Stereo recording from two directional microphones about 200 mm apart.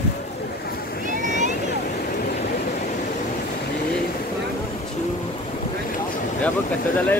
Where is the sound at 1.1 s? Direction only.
40° right (ahead or behind).